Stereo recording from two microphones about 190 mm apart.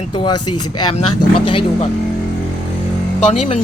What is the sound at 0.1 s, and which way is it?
Speech, 25° left (ahead or behind).